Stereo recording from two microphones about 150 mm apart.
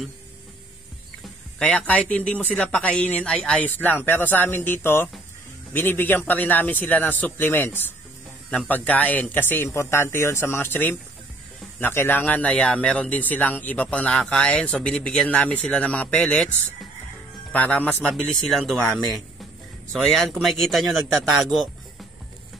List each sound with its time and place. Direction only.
1.6 s speech: 10° left (ahead or behind)
17.5 s a man's voice: 10° left (ahead or behind)